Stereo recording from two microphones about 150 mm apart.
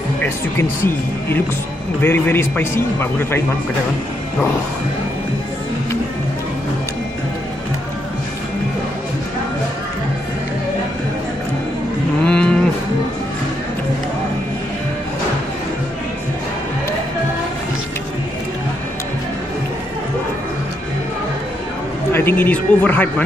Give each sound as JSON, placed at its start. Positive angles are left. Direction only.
{"t": 0.2, "sound": "a man's voice", "side_deg": 15}
{"t": 12.3, "sound": "moo", "side_deg": 5}
{"t": 22.1, "sound": "a man's voice", "side_deg": 15}